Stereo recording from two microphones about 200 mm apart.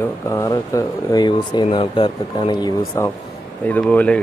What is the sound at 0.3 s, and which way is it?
Speech, 15° left (ahead or behind).